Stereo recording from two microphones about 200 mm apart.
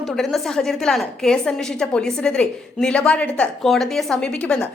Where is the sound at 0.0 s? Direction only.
Centre (ahead or behind).